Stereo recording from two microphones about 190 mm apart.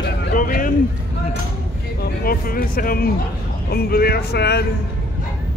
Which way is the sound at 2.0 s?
50° left (ahead or behind).